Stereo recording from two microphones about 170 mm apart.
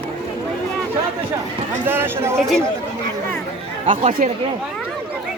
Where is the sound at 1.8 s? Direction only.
15° right (ahead or behind).